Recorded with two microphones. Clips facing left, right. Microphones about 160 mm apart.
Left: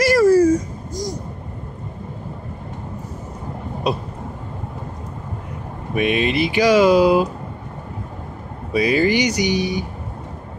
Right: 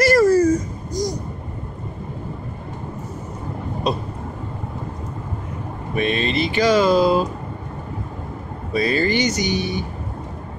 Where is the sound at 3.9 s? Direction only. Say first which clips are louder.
Left 1 dB; 10° left (ahead or behind).